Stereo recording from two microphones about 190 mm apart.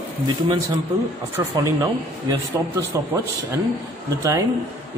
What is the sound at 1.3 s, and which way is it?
Speech, 20° right (ahead or behind).